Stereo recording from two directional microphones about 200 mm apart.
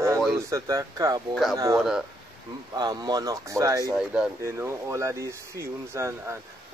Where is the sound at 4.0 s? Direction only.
5° right (ahead or behind).